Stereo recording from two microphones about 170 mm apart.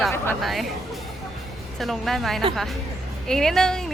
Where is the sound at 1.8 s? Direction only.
Centre (ahead or behind).